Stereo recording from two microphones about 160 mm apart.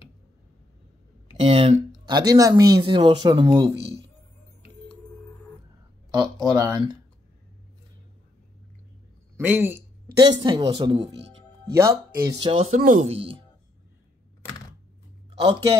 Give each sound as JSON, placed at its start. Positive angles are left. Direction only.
{"t": 1.4, "sound": "speech", "side_deg": -40}
{"t": 6.4, "sound": "speech", "side_deg": -25}
{"t": 9.4, "sound": "speech", "side_deg": -15}
{"t": 10.1, "sound": "speech", "side_deg": -30}
{"t": 12.4, "sound": "speech", "side_deg": -30}
{"t": 12.7, "sound": "speech", "side_deg": -55}
{"t": 13.1, "sound": "speech", "side_deg": -35}